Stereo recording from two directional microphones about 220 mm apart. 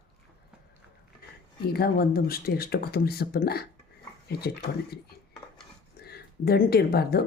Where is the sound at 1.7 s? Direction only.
45° left (ahead or behind).